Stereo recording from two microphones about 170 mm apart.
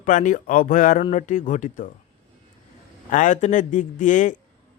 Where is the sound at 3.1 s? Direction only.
50° left (ahead or behind).